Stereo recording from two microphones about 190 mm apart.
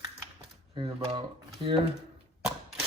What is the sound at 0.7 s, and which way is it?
Speech, 25° right (ahead or behind).